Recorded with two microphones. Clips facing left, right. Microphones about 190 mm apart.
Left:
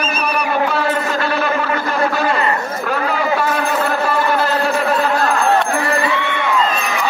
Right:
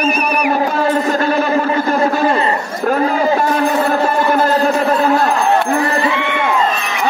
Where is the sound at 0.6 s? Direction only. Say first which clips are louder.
Right 3 dB; 45° right (ahead or behind).